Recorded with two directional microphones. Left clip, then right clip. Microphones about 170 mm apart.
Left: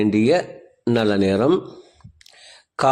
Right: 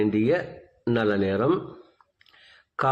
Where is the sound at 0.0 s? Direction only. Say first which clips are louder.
Left 5 dB; 45° left (ahead or behind).